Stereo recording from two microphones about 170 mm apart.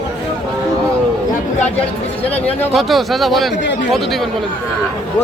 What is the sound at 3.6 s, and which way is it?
Speech, 90° left.